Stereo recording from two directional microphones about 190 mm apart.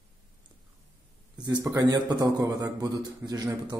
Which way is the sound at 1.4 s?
20° right (ahead or behind).